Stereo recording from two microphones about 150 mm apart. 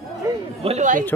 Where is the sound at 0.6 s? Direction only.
50° right (ahead or behind).